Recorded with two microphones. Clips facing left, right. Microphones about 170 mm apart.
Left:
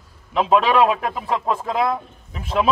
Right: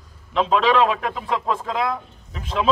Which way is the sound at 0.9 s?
40° left (ahead or behind).